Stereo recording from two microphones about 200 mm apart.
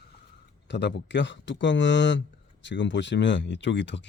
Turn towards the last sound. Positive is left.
turn(degrees=60)  # may be behind; listen again after turning